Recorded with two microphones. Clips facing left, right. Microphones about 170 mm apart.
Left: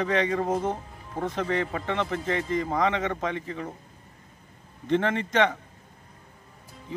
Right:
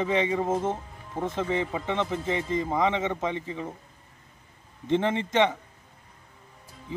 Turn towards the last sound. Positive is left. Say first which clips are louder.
# even
turn(degrees=-20)  # may be behind; listen again after turning